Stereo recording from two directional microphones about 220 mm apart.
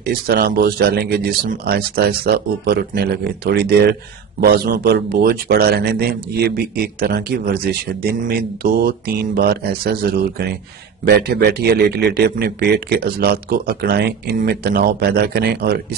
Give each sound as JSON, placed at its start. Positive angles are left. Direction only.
{"t": 0.0, "sound": "a man's voice", "side_deg": -45}